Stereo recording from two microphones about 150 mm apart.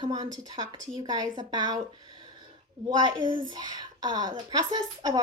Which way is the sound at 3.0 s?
30° right (ahead or behind).